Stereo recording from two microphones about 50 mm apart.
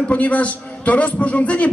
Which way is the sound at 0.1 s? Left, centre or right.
Left.